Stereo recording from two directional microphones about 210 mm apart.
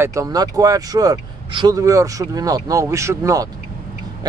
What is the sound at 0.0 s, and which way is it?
Speech, 15° right (ahead or behind).